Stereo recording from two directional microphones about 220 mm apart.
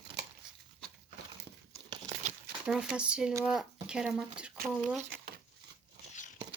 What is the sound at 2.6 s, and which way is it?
Speech, 5° right (ahead or behind).